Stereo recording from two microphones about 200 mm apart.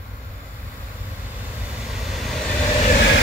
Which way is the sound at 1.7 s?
Centre (ahead or behind).